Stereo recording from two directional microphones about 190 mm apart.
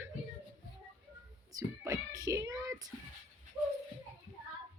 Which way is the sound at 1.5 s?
20° right (ahead or behind).